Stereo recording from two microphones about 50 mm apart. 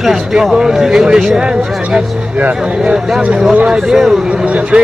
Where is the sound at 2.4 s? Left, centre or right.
Right.